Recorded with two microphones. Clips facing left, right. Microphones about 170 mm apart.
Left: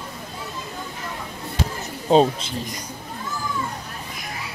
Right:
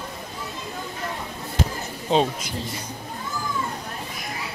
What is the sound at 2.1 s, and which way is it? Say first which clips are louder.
Speech: left 5 dB; 40° left (ahead or behind).